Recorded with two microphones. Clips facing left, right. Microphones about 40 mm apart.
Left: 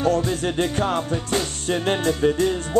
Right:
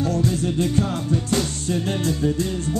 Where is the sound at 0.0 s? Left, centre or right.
Left.